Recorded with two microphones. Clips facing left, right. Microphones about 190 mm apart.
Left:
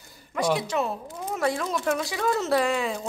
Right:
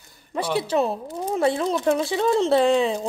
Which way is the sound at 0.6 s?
30° right (ahead or behind).